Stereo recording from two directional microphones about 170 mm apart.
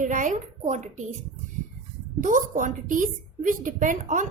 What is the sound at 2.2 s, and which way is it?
A woman's voice, 50° right (ahead or behind).